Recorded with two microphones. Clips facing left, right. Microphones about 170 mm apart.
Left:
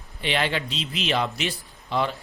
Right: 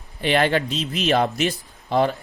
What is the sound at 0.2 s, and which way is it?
Speech, 50° right (ahead or behind).